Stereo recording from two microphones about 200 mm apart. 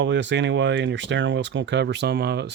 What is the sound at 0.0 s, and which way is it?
Speech, 65° right (ahead or behind).